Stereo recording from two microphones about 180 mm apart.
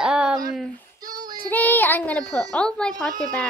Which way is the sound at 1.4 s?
10° left (ahead or behind).